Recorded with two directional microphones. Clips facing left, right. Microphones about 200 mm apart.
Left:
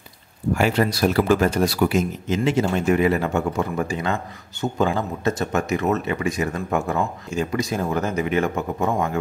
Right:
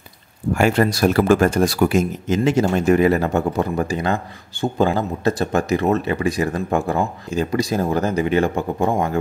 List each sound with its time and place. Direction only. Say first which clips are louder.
0.6 s speech: right 4 dB; 50° right (ahead or behind); by 9.2 s 30° right (ahead or behind)